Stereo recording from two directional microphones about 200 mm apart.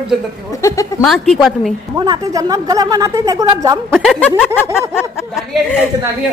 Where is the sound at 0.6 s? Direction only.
15° left (ahead or behind).